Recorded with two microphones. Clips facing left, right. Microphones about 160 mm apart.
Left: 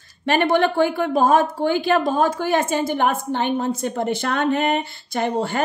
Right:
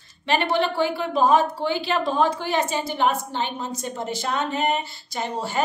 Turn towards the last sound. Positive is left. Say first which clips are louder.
# left 6 dB
turn(degrees=55)  # may be behind; listen again after turning